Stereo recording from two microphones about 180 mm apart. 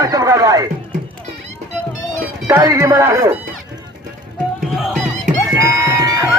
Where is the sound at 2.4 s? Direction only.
20° right (ahead or behind).